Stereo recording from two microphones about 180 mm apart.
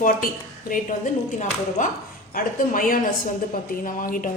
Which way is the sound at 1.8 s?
45° left (ahead or behind).